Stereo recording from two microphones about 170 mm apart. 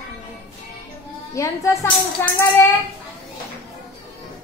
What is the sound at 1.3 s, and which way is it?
Speech, 15° left (ahead or behind).